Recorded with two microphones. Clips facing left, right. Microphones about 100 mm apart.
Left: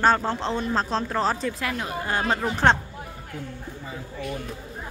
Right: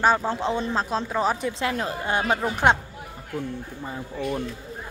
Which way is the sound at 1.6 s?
25° right (ahead or behind).